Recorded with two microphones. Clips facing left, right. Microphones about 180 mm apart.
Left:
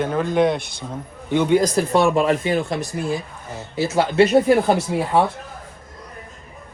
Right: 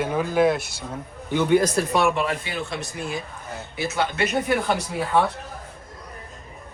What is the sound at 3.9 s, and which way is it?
Speech, 30° left (ahead or behind).